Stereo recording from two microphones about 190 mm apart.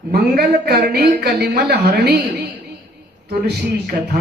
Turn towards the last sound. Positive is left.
turn(degrees=-60)  # may be behind; listen again after turning